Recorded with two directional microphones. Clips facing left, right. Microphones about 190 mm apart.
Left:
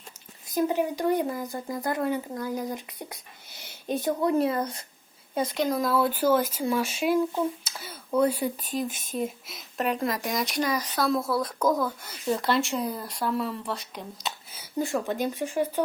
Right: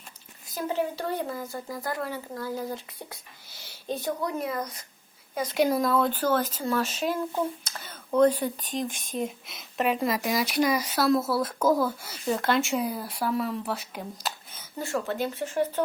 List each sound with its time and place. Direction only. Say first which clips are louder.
0.4 s speech: left 4 dB; 15° left (ahead or behind)
5.5 s speech: right 3 dB; 5° right (ahead or behind)
14.5 s speech: left 4 dB; 15° left (ahead or behind)